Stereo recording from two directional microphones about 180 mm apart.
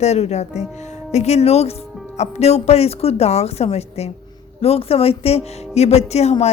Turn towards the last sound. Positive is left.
turn(degrees=35)  # may be behind; listen again after turning